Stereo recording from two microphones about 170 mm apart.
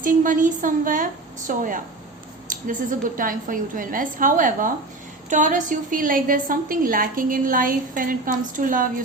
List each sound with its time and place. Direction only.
0.0 s a woman's voice: 50° right (ahead or behind)
3.2 s a woman's voice: 55° right (ahead or behind)